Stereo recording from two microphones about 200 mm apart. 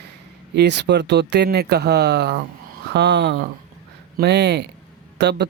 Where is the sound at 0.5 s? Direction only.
60° right (ahead or behind).